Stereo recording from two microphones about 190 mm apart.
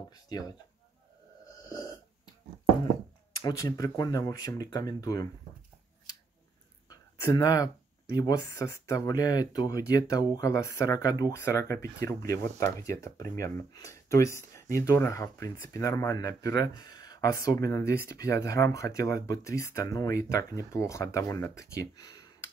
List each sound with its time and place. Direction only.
0.1 s speech: 20° left (ahead or behind)
3.4 s speech: 20° left (ahead or behind)
6.9 s a sound: 20° left (ahead or behind)
8.2 s speech: 20° left (ahead or behind)